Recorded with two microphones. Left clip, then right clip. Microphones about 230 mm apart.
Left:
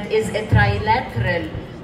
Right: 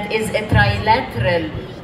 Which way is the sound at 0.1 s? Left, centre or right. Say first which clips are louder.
Even; right.